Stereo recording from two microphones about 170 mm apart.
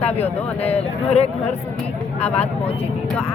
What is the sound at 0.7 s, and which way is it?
Speech, 35° left (ahead or behind).